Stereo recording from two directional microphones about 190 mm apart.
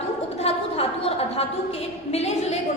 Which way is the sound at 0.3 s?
30° left (ahead or behind).